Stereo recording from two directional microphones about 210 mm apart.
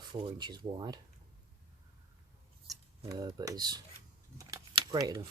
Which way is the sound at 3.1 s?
20° right (ahead or behind).